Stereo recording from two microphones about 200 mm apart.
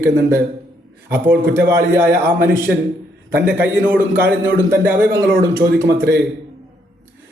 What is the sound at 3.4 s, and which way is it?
Speech, 10° right (ahead or behind).